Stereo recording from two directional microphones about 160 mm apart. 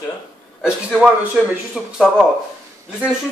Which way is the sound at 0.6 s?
Centre (ahead or behind).